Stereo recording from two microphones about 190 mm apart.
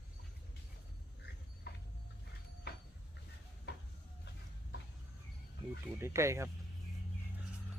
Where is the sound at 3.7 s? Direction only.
60° left (ahead or behind).